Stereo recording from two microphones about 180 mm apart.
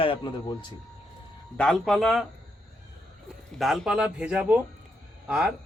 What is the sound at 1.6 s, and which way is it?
Speech, centre (ahead or behind).